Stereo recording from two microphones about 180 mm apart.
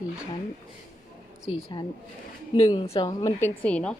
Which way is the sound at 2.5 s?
25° left (ahead or behind).